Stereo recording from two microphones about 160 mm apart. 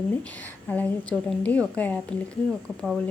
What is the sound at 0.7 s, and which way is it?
Speech, 10° left (ahead or behind).